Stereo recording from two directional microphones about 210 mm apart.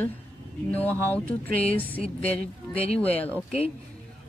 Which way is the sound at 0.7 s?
10° left (ahead or behind).